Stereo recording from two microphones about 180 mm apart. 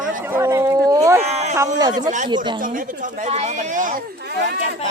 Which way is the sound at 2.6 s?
50° right (ahead or behind).